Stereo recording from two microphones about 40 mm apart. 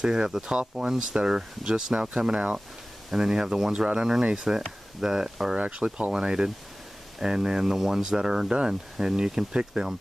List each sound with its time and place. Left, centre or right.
0.0 s speech: right
3.1 s speech: centre
4.5 s speech: centre
5.6 s speech: right